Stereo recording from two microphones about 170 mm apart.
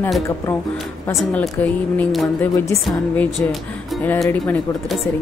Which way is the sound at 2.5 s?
20° left (ahead or behind).